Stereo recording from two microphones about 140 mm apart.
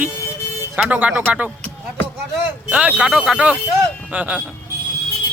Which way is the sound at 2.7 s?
10° right (ahead or behind).